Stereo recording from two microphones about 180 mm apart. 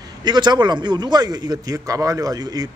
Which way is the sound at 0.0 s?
25° right (ahead or behind).